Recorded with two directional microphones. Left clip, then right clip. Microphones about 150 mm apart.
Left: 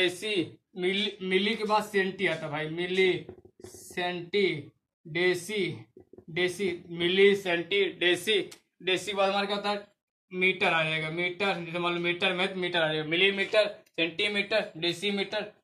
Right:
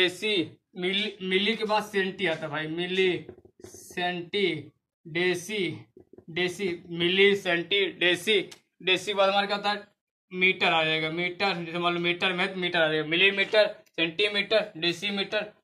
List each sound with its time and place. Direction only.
0.2 s speech: 45° right (ahead or behind)
0.7 s speech: 25° right (ahead or behind); by 14.1 s 40° right (ahead or behind)
14.5 s speech: 30° right (ahead or behind)